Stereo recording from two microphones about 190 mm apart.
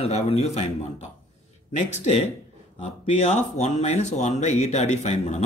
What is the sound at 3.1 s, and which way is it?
Speech, 35° left (ahead or behind).